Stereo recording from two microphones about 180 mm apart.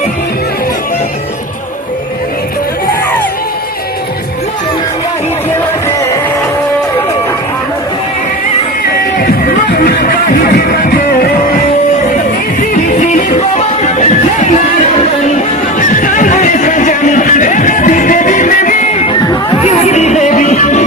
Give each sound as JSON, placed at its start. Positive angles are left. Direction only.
{"t": 8.9, "sound": "music", "side_deg": 55}
{"t": 12.7, "sound": "music", "side_deg": 45}
{"t": 19.6, "sound": "music", "side_deg": 40}